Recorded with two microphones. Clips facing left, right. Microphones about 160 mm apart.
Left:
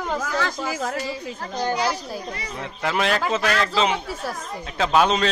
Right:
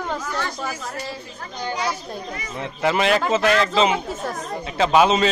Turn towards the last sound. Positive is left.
turn(degrees=-5)  # may be behind; listen again after turning